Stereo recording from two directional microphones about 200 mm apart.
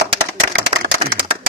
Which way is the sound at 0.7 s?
35° right (ahead or behind).